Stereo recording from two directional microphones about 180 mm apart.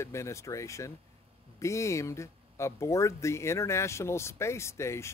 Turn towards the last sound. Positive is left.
turn(degrees=15)  # may be behind; listen again after turning